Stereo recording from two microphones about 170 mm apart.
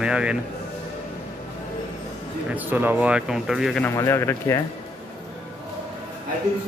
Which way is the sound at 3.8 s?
15° left (ahead or behind).